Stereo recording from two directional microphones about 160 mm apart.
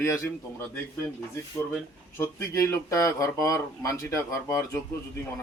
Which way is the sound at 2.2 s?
15° left (ahead or behind).